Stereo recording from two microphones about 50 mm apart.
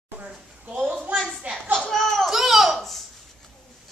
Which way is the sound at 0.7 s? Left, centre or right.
Right.